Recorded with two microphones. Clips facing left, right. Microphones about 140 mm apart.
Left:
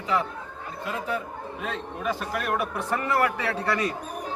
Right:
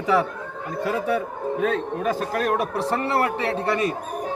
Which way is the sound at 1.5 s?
45° right (ahead or behind).